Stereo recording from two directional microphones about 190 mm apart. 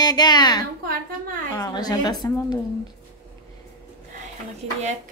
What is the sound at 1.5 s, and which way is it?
A woman's voice, 20° left (ahead or behind).